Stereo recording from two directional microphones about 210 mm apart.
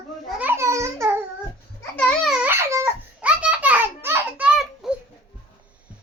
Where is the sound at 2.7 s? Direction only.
10° right (ahead or behind).